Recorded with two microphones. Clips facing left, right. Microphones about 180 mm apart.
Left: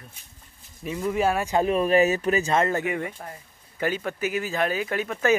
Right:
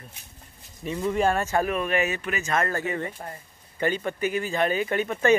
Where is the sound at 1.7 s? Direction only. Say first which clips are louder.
Left 6 dB; 35° left (ahead or behind).